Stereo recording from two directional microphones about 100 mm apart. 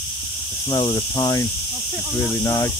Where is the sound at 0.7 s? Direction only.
45° left (ahead or behind).